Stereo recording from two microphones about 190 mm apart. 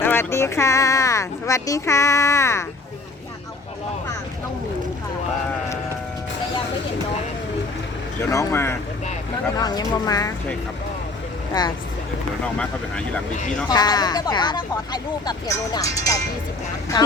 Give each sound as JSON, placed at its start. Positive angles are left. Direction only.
{"t": 0.0, "sound": "speech", "side_deg": 10}
{"t": 8.3, "sound": "speech", "side_deg": 15}
{"t": 11.6, "sound": "speech", "side_deg": 20}
{"t": 12.5, "sound": "speech", "side_deg": 5}
{"t": 13.7, "sound": "speech", "side_deg": 20}